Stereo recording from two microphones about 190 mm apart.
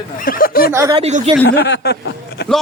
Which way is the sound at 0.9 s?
35° right (ahead or behind).